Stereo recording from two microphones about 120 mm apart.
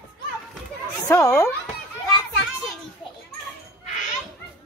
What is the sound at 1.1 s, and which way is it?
Speech, 25° left (ahead or behind).